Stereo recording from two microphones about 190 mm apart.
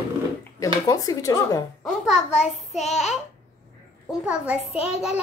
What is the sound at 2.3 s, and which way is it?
Child singing, 35° left (ahead or behind).